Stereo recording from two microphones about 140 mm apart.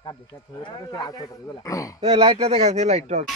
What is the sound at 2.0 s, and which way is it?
Speech, 45° right (ahead or behind).